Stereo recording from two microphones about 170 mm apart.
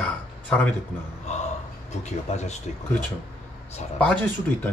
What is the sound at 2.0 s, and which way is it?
Speech, 40° left (ahead or behind).